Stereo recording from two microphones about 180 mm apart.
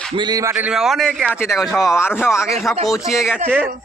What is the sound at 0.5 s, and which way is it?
A man's voice, 5° right (ahead or behind).